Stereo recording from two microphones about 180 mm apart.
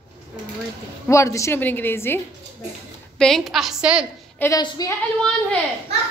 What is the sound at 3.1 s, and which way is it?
Speech, centre (ahead or behind).